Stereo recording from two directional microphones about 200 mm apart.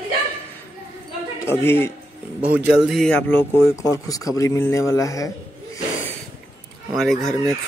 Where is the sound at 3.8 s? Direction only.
15° left (ahead or behind).